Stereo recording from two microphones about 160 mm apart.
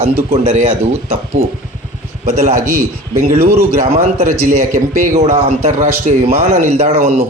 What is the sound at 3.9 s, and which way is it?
A man's voice, 40° right (ahead or behind).